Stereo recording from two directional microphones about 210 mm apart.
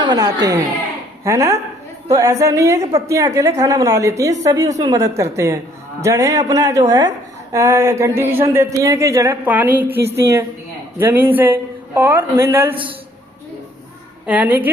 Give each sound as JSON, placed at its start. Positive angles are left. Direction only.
{"t": 0.0, "sound": "speech", "side_deg": -20}
{"t": 14.3, "sound": "speech", "side_deg": -5}